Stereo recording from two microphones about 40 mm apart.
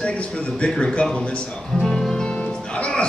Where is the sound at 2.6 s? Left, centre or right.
Left.